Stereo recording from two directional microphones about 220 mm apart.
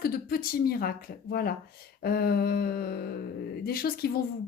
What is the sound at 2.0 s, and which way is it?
A woman's voice, 45° left (ahead or behind).